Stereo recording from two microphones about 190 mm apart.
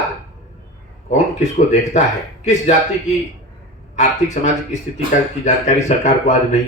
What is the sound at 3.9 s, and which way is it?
Speech, 40° left (ahead or behind).